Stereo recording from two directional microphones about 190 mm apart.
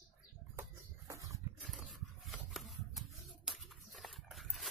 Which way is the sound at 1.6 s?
Centre (ahead or behind).